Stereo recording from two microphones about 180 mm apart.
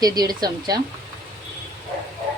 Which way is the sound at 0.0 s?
20° right (ahead or behind).